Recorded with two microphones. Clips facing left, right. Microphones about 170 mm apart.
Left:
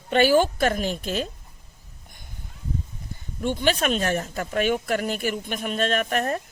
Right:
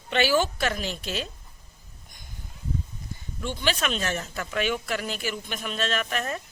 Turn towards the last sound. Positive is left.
turn(degrees=50)  # may be behind; listen again after turning